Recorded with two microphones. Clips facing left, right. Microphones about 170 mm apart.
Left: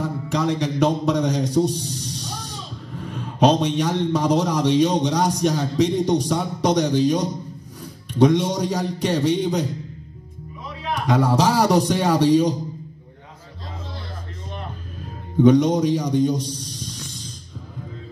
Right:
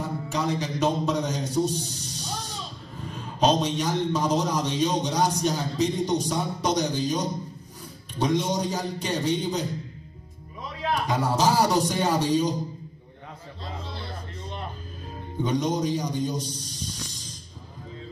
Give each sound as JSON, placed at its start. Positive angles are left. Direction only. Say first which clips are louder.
{"t": 0.0, "sound": "a man's voice", "louder": "left 5 dB", "side_deg": 70}
{"t": 11.0, "sound": "speech", "louder": "left 7 dB", "side_deg": 65}
{"t": 15.4, "sound": "a man's voice", "louder": "left 10 dB", "side_deg": 65}